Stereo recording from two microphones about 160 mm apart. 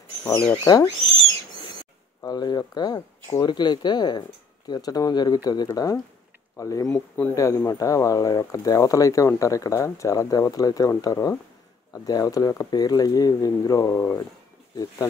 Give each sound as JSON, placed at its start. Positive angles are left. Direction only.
{"t": 0.2, "sound": "speech", "side_deg": 15}
{"t": 2.2, "sound": "speech", "side_deg": 25}